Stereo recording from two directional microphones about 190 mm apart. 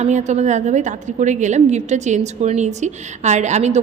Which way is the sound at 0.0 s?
40° right (ahead or behind).